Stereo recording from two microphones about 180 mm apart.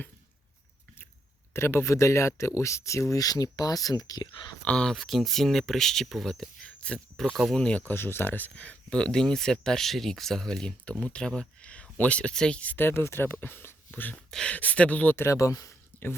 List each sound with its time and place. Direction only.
1.5 s speech: 15° left (ahead or behind)
4.6 s speech: 5° left (ahead or behind)